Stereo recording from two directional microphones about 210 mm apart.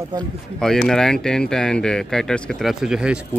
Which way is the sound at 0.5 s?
5° left (ahead or behind).